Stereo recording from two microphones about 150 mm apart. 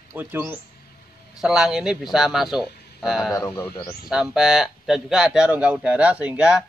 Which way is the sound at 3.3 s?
20° left (ahead or behind).